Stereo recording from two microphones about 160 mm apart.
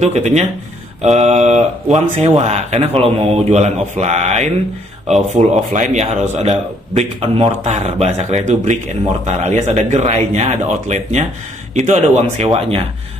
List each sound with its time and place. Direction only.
0.0 s speech: 45° right (ahead or behind)
7.2 s speech: 35° right (ahead or behind)